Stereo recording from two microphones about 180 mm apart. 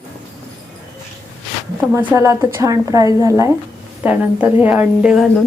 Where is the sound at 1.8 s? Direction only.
10° right (ahead or behind).